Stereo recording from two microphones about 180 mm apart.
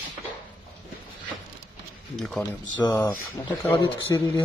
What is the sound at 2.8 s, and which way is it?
Speech, 15° left (ahead or behind).